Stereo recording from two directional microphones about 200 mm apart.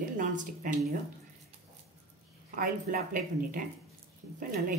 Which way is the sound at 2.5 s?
45° right (ahead or behind).